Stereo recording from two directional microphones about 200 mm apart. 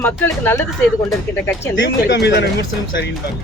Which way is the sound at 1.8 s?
55° left (ahead or behind).